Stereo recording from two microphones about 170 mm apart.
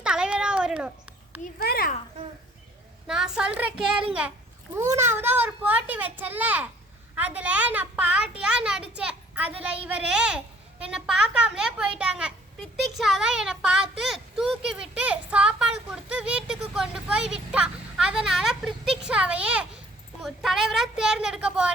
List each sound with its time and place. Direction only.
0.0 s cat: 5° right (ahead or behind)
1.6 s children playing: 65° left (ahead or behind)
3.1 s a child's voice: 5° right (ahead or behind)